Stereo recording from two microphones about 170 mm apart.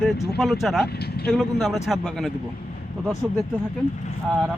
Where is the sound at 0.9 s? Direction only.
70° left (ahead or behind).